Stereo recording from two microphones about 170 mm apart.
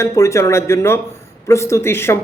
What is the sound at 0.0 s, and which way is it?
Speech, 15° left (ahead or behind).